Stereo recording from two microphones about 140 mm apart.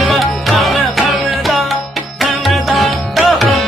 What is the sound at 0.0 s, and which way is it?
Music, centre (ahead or behind).